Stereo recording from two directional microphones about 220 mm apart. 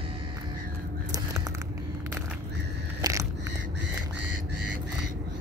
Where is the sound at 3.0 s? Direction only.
15° right (ahead or behind).